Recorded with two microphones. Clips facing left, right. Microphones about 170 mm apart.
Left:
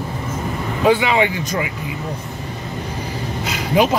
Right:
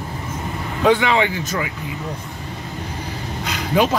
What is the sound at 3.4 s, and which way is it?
Vehicle, 10° left (ahead or behind).